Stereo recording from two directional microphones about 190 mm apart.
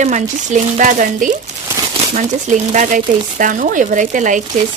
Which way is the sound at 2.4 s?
40° right (ahead or behind).